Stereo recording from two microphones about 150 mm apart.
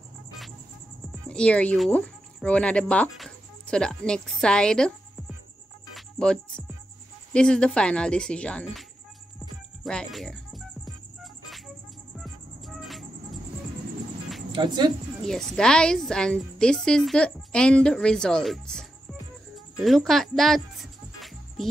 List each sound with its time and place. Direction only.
1.3 s speech: 5° left (ahead or behind)
5.9 s music: 5° left (ahead or behind)
7.3 s a woman's voice: 5° left (ahead or behind)
9.8 s speech: 5° left (ahead or behind)
12.2 s music: centre (ahead or behind)
14.5 s speech: 30° right (ahead or behind)
15.2 s a woman's voice: 5° left (ahead or behind)
19.8 s music: centre (ahead or behind)